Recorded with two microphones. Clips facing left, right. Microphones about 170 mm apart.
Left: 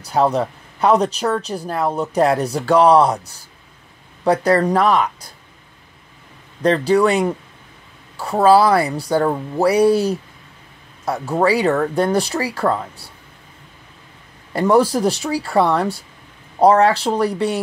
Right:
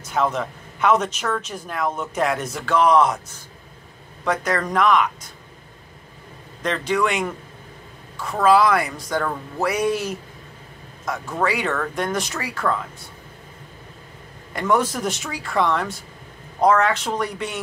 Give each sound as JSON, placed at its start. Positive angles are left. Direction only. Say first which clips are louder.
{"t": 0.0, "sound": "speech", "louder": "left 5 dB", "side_deg": 35}
{"t": 6.6, "sound": "speech", "louder": "left 7 dB", "side_deg": 35}
{"t": 14.5, "sound": "speech", "louder": "left 6 dB", "side_deg": 35}